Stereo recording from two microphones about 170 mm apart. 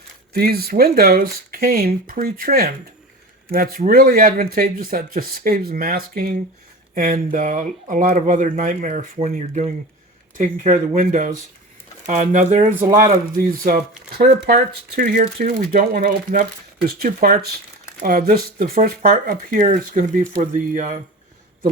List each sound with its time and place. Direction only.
0.3 s speech: 65° right (ahead or behind); by 12.6 s 45° right (ahead or behind)
12.7 s speech: 15° right (ahead or behind)
13.3 s speech: 55° right (ahead or behind)